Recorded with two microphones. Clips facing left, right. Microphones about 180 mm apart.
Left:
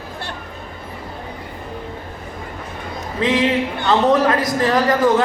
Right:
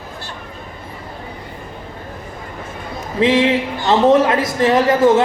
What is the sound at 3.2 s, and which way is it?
A man's voice, 25° right (ahead or behind).